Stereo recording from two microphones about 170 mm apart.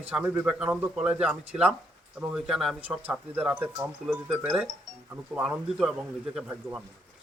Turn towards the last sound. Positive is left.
turn(degrees=-5)  # may be behind; listen again after turning